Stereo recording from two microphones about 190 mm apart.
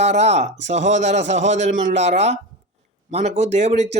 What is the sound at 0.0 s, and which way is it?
A man's voice, 35° right (ahead or behind).